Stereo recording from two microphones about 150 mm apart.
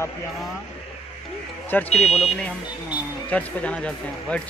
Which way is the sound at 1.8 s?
45° left (ahead or behind).